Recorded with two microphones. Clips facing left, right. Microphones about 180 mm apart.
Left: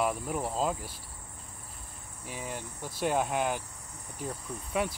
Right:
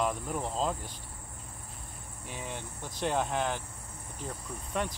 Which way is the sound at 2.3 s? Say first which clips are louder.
Left 2 dB; 5° left (ahead or behind).